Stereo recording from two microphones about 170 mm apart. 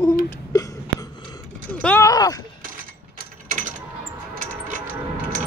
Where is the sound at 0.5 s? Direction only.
20° left (ahead or behind).